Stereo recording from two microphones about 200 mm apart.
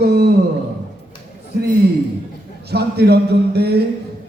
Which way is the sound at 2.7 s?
55° right (ahead or behind).